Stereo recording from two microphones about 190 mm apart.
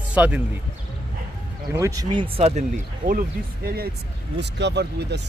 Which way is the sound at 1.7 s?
15° right (ahead or behind).